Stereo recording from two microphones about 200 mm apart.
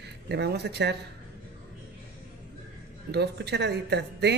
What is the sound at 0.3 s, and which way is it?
Speech, 55° right (ahead or behind).